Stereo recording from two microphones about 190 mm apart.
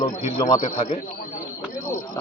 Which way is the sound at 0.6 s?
35° left (ahead or behind).